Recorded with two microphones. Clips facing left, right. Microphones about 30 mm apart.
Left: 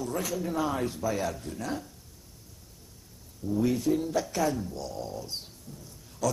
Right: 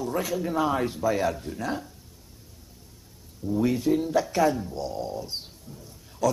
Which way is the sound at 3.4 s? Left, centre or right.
Centre.